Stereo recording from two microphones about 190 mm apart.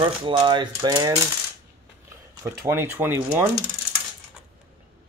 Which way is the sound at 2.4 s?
15° right (ahead or behind).